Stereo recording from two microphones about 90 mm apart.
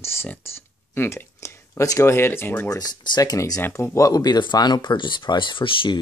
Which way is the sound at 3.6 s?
30° left (ahead or behind).